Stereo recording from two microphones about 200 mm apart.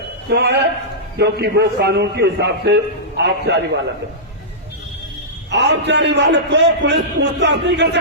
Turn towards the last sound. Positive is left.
turn(degrees=-60)  # may be behind; listen again after turning